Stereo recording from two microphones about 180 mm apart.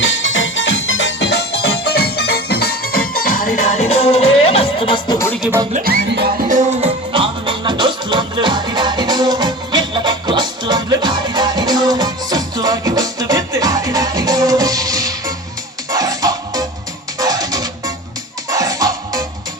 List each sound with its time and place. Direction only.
0.0 s music: 90° left; by 3.4 s 55° left (ahead or behind)
3.6 s music: 35° left (ahead or behind)
5.1 s music: 15° left (ahead or behind)
5.7 s music: 60° right (ahead or behind)
6.7 s music: 30° right (ahead or behind)